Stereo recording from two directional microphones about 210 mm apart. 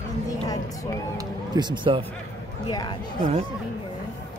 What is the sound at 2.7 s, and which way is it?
Speech, 20° left (ahead or behind).